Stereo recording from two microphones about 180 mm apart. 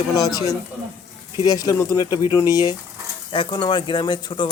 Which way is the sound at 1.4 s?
20° left (ahead or behind).